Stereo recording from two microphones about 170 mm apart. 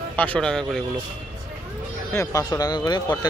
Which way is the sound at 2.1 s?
20° left (ahead or behind).